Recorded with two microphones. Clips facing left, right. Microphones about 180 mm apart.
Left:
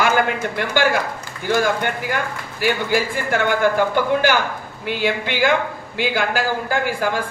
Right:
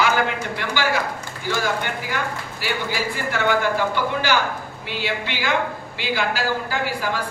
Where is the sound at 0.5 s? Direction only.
50° left (ahead or behind).